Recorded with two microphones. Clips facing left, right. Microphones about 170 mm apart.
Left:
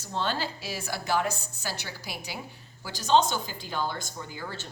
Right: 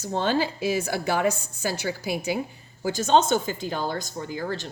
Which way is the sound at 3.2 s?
45° right (ahead or behind).